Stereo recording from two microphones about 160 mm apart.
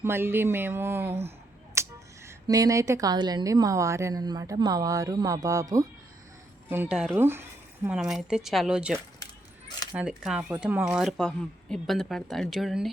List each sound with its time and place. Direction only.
0.0 s speech: 15° right (ahead or behind)